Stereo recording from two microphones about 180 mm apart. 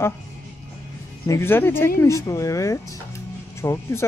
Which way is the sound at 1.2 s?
15° left (ahead or behind).